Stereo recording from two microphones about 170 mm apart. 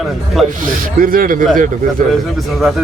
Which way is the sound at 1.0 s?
55° right (ahead or behind).